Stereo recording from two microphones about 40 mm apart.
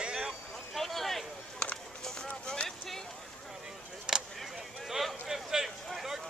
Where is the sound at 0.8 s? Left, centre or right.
Centre.